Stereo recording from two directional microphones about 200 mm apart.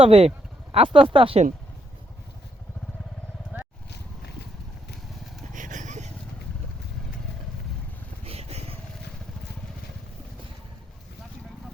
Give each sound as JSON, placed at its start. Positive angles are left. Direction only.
{"t": 0.0, "sound": "speech", "side_deg": -30}
{"t": 3.5, "sound": "vehicle", "side_deg": -10}
{"t": 5.5, "sound": "a sound", "side_deg": -40}
{"t": 8.2, "sound": "vehicle", "side_deg": -30}